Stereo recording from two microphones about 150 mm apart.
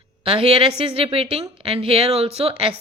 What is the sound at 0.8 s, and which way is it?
Speech, 40° right (ahead or behind).